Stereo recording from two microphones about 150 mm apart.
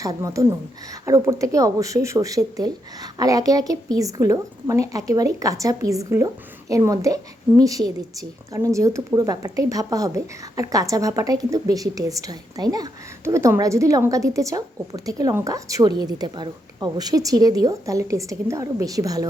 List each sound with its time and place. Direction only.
0.0 s speech: 20° right (ahead or behind)